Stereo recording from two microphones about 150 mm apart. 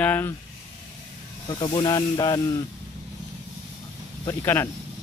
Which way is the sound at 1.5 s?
35° left (ahead or behind).